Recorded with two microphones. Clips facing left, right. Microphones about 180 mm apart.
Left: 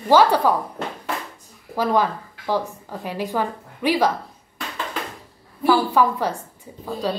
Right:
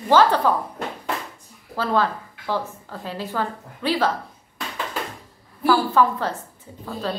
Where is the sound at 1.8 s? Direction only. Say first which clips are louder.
Left 2 dB; 15° left (ahead or behind).